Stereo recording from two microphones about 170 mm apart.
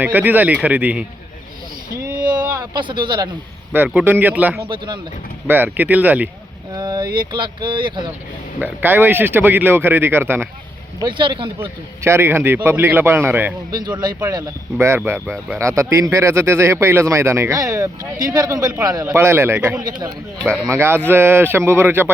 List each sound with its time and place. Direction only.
0.0 s speech: 10° right (ahead or behind)
2.3 s vehicle: 10° right (ahead or behind)
2.7 s speech: 30° right (ahead or behind)
3.7 s speech: 10° right (ahead or behind)
6.7 s speech: 25° right (ahead or behind)
8.5 s speech: 10° right (ahead or behind)
11.0 s speech: 25° right (ahead or behind)
12.0 s speech: 15° right (ahead or behind)
19.8 s speech: 25° right (ahead or behind)